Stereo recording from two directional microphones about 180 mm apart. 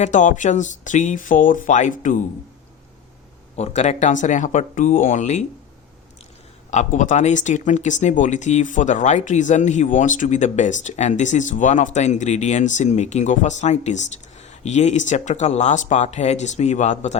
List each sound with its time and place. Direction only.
0.0 s speech: 45° left (ahead or behind)
3.5 s speech: 35° left (ahead or behind)
6.7 s speech: 40° left (ahead or behind)